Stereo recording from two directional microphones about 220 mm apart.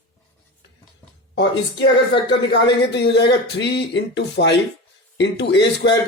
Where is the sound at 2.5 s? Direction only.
50° left (ahead or behind).